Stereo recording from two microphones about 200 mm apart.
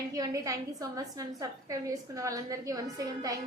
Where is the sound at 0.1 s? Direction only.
15° right (ahead or behind).